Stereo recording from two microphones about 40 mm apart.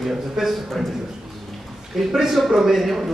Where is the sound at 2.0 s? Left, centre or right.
Centre.